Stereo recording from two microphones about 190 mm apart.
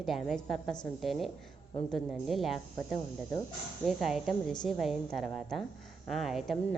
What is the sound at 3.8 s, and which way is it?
A woman's voice, centre (ahead or behind).